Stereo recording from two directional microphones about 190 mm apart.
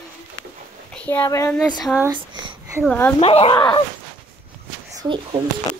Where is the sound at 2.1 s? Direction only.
25° right (ahead or behind).